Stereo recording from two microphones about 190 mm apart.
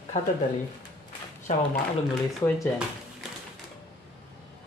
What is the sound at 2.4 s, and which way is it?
Speech, 15° left (ahead or behind).